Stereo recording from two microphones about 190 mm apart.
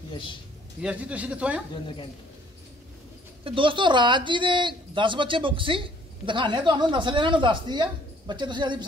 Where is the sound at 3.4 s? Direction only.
25° right (ahead or behind).